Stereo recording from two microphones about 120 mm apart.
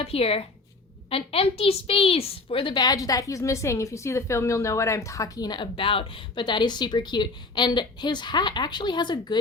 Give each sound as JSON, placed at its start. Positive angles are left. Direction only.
{"t": 0.0, "sound": "a woman's voice", "side_deg": 55}